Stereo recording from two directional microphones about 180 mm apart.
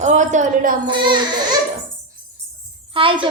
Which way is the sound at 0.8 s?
25° right (ahead or behind).